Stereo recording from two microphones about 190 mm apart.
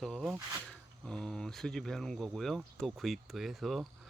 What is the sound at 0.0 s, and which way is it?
Speech, centre (ahead or behind).